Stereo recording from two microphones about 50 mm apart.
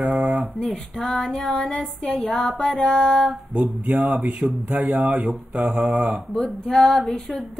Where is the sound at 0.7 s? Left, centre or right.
Left.